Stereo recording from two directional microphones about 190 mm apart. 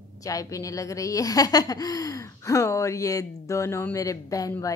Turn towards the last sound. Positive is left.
turn(degrees=15)  # may be behind; listen again after turning